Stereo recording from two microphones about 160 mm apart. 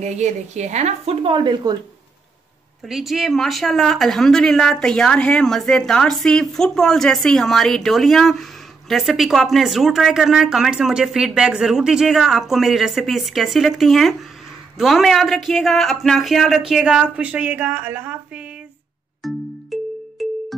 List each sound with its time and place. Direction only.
0.0 s a woman's voice: 45° right (ahead or behind); by 1.8 s 25° right (ahead or behind)
2.9 s speech: centre (ahead or behind)
19.2 s music: centre (ahead or behind)